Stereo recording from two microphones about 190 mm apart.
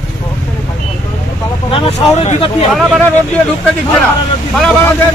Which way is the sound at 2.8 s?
Centre (ahead or behind).